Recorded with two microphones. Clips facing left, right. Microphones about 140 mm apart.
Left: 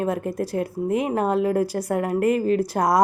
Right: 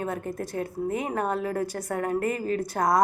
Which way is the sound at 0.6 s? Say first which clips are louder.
Left 4 dB; 90° left.